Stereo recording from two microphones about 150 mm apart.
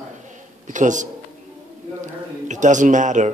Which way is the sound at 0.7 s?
55° right (ahead or behind).